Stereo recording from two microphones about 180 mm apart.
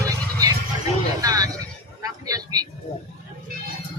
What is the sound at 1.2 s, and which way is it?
Vehicle, 20° right (ahead or behind).